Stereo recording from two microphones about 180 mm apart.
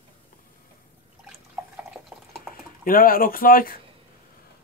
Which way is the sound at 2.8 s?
55° left (ahead or behind).